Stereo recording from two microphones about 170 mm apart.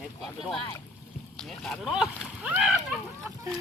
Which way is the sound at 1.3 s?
5° left (ahead or behind).